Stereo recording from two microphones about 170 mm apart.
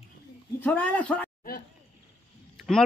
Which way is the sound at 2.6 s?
Centre (ahead or behind).